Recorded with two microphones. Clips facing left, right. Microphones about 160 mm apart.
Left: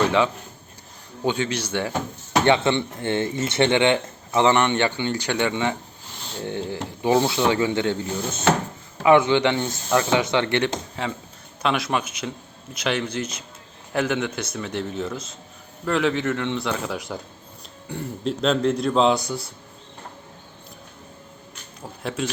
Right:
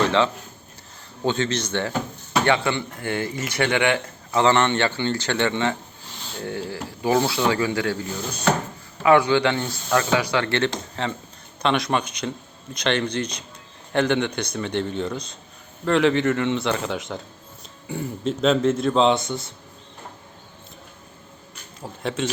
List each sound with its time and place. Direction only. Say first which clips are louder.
0.0 s a sound: even; 10° left (ahead or behind)
1.2 s a man's voice: right 1 dB; 10° left (ahead or behind)
21.8 s speech: right 2 dB; centre (ahead or behind)